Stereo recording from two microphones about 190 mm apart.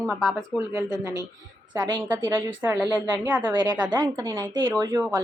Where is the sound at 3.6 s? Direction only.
20° right (ahead or behind).